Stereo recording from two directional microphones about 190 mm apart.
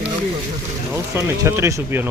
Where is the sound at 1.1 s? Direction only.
15° right (ahead or behind).